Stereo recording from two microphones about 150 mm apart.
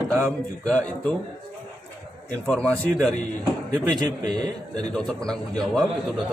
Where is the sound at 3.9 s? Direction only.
30° right (ahead or behind).